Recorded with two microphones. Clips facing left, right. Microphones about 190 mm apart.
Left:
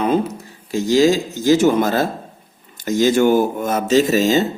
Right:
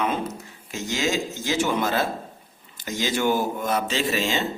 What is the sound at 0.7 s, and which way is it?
Speech, 35° left (ahead or behind).